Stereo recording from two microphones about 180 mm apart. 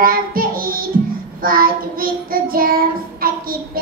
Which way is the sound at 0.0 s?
55° right (ahead or behind).